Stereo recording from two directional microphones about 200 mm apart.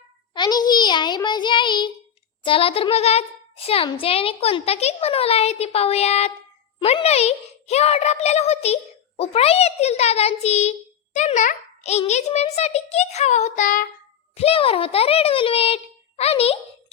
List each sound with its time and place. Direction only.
0.3 s a child's voice: 20° left (ahead or behind); by 13.8 s 40° left (ahead or behind)
14.3 s a child's voice: 30° left (ahead or behind)